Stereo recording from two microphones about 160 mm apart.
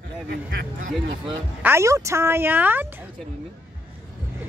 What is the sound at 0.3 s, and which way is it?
Speech, 90° right.